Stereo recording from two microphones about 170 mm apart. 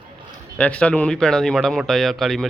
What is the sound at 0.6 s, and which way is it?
Speech, 5° left (ahead or behind).